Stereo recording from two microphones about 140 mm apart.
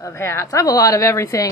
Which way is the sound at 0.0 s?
20° left (ahead or behind).